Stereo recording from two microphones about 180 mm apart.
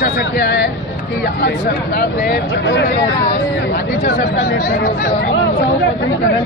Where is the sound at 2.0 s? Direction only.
70° left (ahead or behind).